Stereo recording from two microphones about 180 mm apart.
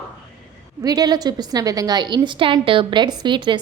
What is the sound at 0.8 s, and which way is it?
A woman's voice, 20° right (ahead or behind).